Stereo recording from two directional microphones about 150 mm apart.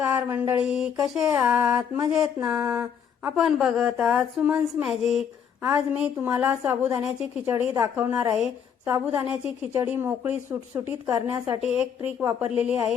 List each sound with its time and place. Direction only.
0.0 s a sound: 15° right (ahead or behind)
0.6 s mantra: 5° right (ahead or behind)
1.4 s speech: 10° right (ahead or behind)
3.3 s mantra: centre (ahead or behind)
5.7 s speech: 10° right (ahead or behind)
7.4 s a woman's voice: 20° right (ahead or behind)
11.6 s mantra: 5° right (ahead or behind)
12.2 s speech: 10° right (ahead or behind)